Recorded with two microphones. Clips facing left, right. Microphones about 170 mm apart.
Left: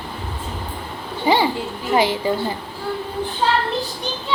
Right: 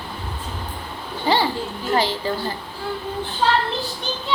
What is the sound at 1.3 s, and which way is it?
A woman's voice, 15° left (ahead or behind).